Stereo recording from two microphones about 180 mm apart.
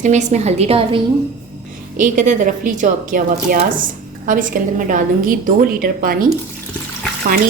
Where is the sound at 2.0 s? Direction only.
45° right (ahead or behind).